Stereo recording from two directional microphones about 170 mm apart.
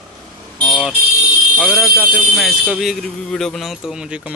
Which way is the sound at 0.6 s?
5° left (ahead or behind).